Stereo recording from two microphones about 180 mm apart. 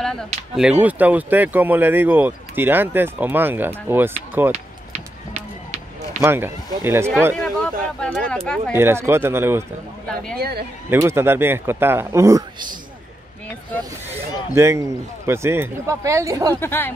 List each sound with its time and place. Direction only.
0.0 s a sound: 5° left (ahead or behind)
0.6 s speech: 5° right (ahead or behind)
4.9 s run: 35° right (ahead or behind)
6.2 s speech: 10° right (ahead or behind)
7.3 s speech: 5° left (ahead or behind)
8.7 s speech: 15° right (ahead or behind)
10.0 s speech: 5° left (ahead or behind)
10.9 s speech: 15° right (ahead or behind)
14.5 s speech: 15° right (ahead or behind)
16.5 s speech: 10° left (ahead or behind)